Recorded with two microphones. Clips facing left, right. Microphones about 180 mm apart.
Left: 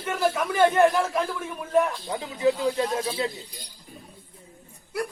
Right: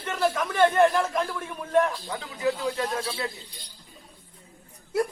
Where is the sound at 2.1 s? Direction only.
20° left (ahead or behind).